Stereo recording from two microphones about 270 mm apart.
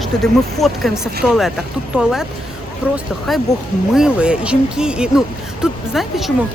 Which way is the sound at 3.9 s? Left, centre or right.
Centre.